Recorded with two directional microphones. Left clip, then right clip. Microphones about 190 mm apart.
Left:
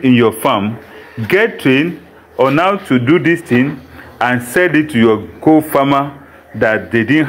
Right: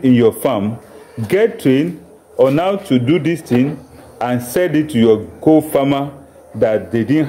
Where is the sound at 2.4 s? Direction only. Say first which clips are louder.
Left 2 dB; centre (ahead or behind).